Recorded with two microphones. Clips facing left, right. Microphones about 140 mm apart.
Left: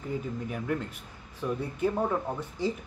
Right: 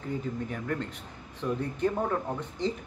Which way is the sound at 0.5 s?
5° left (ahead or behind).